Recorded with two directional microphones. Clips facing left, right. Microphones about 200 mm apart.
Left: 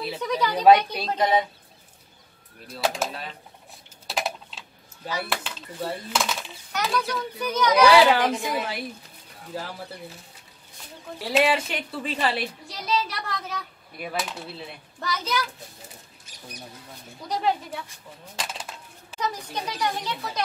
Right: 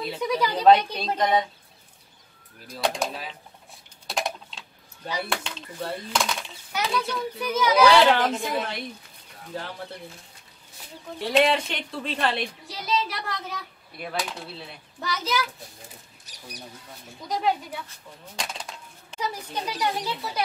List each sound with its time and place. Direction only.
0.2 s a child's voice: 10° right (ahead or behind)
0.6 s speech: 10° left (ahead or behind)
2.7 s a child's voice: 5° left (ahead or behind)
4.1 s typing: 5° left (ahead or behind)
5.2 s a child's voice: 5° left (ahead or behind)
11.1 s a child's voice: 5° left (ahead or behind)
15.0 s a child's voice: centre (ahead or behind)
16.3 s speech: 35° right (ahead or behind)
17.3 s a child's voice: centre (ahead or behind)
18.3 s a sound: 5° left (ahead or behind)
19.1 s a child's voice: 10° right (ahead or behind)